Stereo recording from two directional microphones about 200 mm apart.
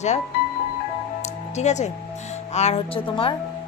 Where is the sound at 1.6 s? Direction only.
35° left (ahead or behind).